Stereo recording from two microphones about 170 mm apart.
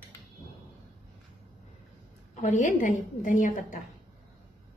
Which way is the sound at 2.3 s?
45° left (ahead or behind).